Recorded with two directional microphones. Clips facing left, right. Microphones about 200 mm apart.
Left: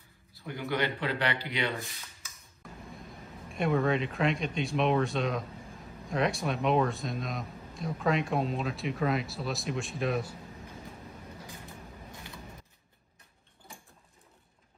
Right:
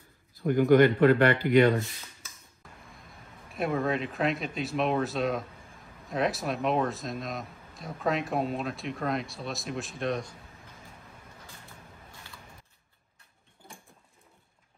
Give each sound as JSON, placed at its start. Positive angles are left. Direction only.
{"t": 0.3, "sound": "speech", "side_deg": -50}
{"t": 3.5, "sound": "a man's voice", "side_deg": 0}